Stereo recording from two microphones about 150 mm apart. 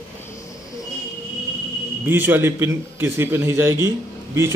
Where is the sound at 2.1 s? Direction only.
15° right (ahead or behind).